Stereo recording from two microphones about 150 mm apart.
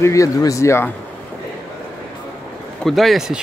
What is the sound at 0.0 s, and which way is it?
Speech, 20° left (ahead or behind).